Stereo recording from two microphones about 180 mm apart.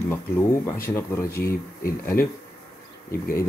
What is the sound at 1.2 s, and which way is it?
Speech, 55° left (ahead or behind).